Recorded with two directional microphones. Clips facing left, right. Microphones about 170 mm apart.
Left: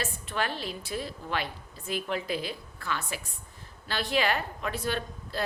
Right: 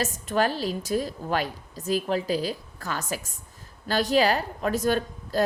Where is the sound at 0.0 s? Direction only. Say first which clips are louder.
Right 7 dB; 40° right (ahead or behind).